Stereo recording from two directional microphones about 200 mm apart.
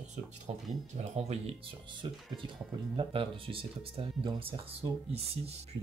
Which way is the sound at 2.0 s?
20° right (ahead or behind).